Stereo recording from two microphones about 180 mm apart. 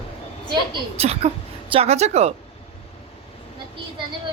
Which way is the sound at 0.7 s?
35° right (ahead or behind).